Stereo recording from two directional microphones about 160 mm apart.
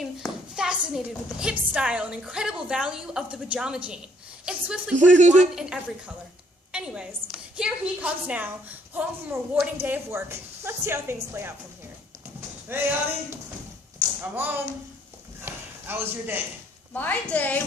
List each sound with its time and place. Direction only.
0.0 s a woman's voice: centre (ahead or behind)
4.9 s a man's voice: 50° right (ahead or behind)
5.5 s a woman's voice: 5° right (ahead or behind)
12.7 s a woman's voice: 15° right (ahead or behind)
14.2 s a woman's voice: 10° right (ahead or behind)
15.4 s a sound: 15° right (ahead or behind)
16.9 s a woman's voice: 10° left (ahead or behind)